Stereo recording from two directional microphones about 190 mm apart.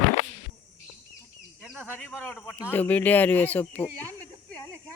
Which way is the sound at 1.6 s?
5° right (ahead or behind).